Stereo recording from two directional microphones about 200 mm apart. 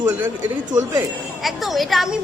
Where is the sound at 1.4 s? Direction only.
Centre (ahead or behind).